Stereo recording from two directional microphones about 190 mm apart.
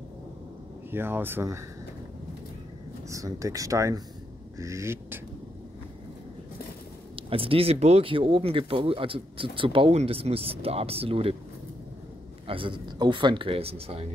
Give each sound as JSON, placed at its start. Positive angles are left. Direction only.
{"t": 0.9, "sound": "speech", "side_deg": -10}
{"t": 3.1, "sound": "speech", "side_deg": -15}
{"t": 7.2, "sound": "speech", "side_deg": -30}
{"t": 12.4, "sound": "speech", "side_deg": -25}